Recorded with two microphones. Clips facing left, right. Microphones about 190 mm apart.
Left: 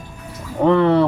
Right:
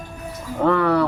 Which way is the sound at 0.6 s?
25° left (ahead or behind).